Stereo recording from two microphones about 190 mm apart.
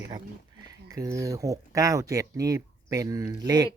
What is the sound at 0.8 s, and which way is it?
Speech, 20° right (ahead or behind).